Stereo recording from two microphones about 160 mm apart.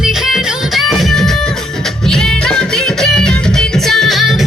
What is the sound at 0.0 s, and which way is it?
Music, centre (ahead or behind).